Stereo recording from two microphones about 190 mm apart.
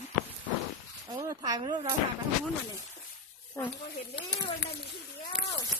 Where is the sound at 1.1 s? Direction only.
20° right (ahead or behind).